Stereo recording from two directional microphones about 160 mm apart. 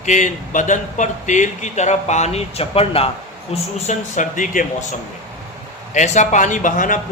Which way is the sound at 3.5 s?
45° left (ahead or behind).